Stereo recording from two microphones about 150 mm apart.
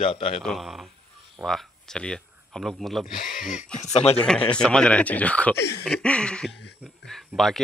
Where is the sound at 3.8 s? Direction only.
45° left (ahead or behind).